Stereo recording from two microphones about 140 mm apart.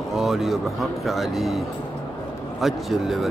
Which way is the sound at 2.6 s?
Centre (ahead or behind).